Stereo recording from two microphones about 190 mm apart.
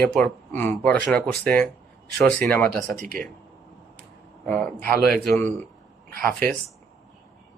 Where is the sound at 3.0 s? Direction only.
50° right (ahead or behind).